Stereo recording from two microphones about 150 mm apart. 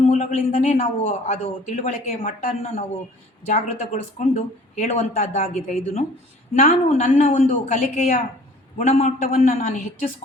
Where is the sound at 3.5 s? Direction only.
55° left (ahead or behind).